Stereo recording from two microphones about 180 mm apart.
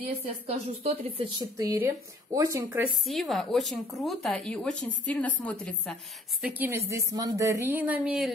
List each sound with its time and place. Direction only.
0.5 s a woman's voice: 35° right (ahead or behind)
1.4 s speech: 15° right (ahead or behind)
3.1 s speech: centre (ahead or behind)
6.4 s speech: 10° right (ahead or behind)